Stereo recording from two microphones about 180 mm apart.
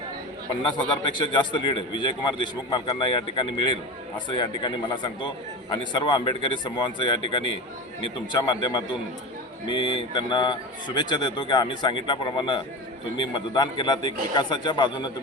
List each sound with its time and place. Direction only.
1.2 s a man's voice: 25° left (ahead or behind)